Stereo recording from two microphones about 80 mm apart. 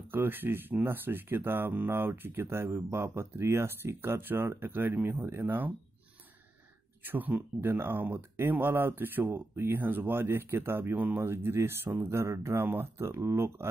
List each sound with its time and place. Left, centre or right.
0.1 s speech: right
7.0 s speech: right